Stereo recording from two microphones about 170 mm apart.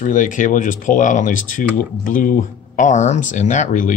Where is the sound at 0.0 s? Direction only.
50° left (ahead or behind).